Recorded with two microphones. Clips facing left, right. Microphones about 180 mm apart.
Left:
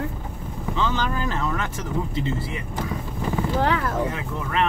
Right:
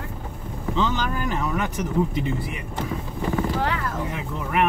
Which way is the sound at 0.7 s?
15° right (ahead or behind).